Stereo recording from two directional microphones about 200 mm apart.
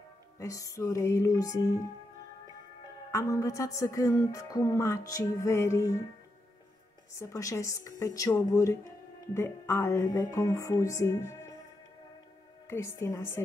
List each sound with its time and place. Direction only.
0.4 s a woman's voice: 15° left (ahead or behind)
3.1 s a woman's voice: 15° left (ahead or behind)
7.2 s a woman's voice: 15° left (ahead or behind)
12.6 s a woman's voice: 15° left (ahead or behind)